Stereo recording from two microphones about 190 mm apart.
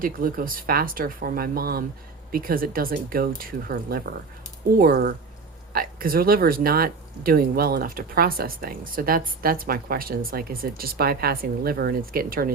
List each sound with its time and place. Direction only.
0.0 s speech: 50° right (ahead or behind)